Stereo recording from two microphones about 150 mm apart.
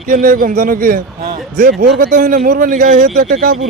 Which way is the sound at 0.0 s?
65° right (ahead or behind).